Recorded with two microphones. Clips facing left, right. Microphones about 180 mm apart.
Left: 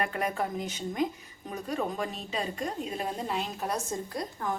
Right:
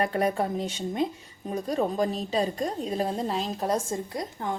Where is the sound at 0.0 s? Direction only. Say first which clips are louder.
Right 5 dB; 35° right (ahead or behind).